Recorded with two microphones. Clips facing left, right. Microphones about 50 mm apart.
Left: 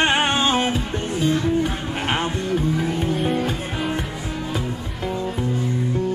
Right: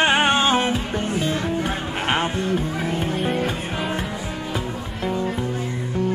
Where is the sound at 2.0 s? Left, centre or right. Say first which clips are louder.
Right 1 dB; centre.